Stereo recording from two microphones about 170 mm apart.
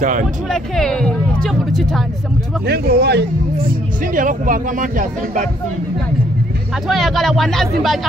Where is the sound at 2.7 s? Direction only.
70° right (ahead or behind).